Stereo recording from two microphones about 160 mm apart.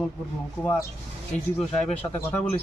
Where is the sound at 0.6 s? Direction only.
15° left (ahead or behind).